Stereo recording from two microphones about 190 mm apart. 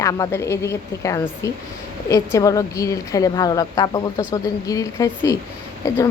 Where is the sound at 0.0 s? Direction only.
15° left (ahead or behind).